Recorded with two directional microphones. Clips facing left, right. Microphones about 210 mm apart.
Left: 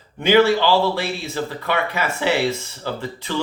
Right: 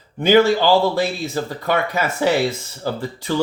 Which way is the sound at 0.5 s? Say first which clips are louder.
Right 2 dB; 45° right (ahead or behind).